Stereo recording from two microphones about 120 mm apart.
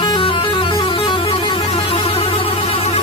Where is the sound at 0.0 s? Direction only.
40° left (ahead or behind).